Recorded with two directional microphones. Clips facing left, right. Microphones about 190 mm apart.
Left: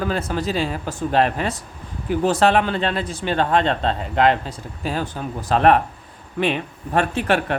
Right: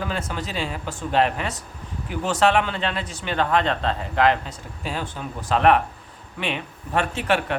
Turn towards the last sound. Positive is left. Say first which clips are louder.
# left 3 dB
turn(degrees=40)  # may be behind; listen again after turning